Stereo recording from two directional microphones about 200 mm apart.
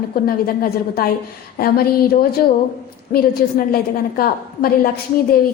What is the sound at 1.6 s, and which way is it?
A woman's voice, 50° left (ahead or behind).